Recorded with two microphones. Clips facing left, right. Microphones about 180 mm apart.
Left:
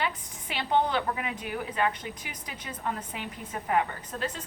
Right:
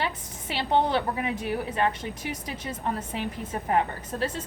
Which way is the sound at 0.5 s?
30° right (ahead or behind).